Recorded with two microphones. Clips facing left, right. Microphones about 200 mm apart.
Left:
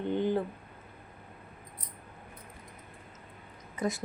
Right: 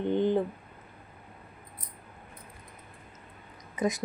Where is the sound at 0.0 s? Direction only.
20° right (ahead or behind).